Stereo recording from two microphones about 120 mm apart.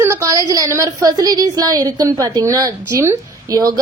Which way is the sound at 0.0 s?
25° right (ahead or behind).